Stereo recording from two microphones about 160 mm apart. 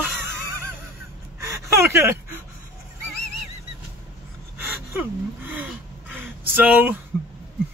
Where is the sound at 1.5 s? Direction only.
15° right (ahead or behind).